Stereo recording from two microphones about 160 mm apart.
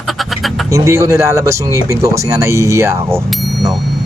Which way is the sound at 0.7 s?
20° right (ahead or behind).